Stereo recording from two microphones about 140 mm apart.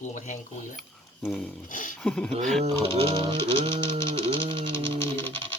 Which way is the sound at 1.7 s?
70° left (ahead or behind).